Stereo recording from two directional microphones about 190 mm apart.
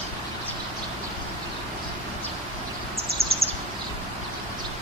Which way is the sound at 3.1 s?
55° right (ahead or behind).